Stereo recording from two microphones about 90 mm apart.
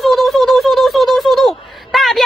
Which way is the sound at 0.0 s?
Centre (ahead or behind).